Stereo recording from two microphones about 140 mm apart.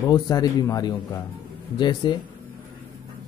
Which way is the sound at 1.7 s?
35° left (ahead or behind).